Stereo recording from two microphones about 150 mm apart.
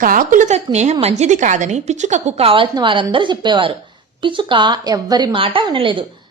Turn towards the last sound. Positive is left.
turn(degrees=-35)  # may be behind; listen again after turning